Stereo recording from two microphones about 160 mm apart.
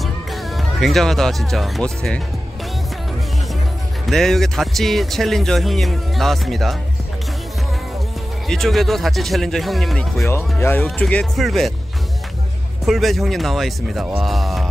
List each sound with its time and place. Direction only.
0.0 s speech: centre (ahead or behind)
4.0 s speech: centre (ahead or behind)
8.5 s speech: centre (ahead or behind)
10.2 s speech: 15° left (ahead or behind); by 11.7 s centre (ahead or behind)
12.8 s speech: centre (ahead or behind)